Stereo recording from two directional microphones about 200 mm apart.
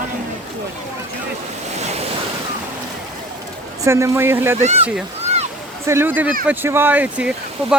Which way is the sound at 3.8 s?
15° right (ahead or behind).